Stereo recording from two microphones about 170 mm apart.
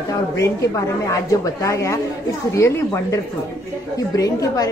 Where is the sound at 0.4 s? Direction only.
20° left (ahead or behind).